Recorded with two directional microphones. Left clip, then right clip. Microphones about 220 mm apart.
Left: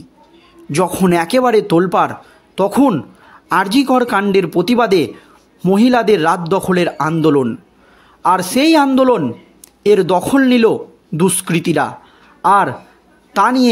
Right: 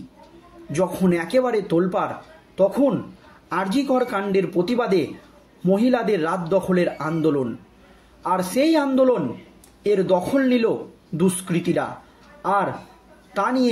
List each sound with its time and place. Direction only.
0.7 s speech: 45° left (ahead or behind)